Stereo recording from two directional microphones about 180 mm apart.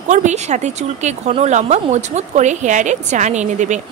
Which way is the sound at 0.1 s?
40° right (ahead or behind).